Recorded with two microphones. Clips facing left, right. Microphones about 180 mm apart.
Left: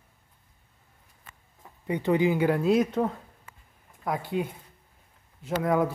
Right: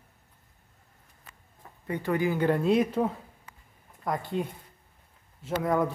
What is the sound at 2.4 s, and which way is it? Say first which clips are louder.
Speech: left 1 dB; 5° left (ahead or behind).